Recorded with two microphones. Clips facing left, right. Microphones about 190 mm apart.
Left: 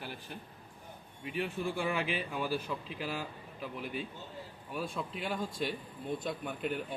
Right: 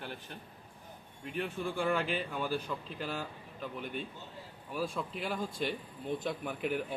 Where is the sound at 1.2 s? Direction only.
5° left (ahead or behind).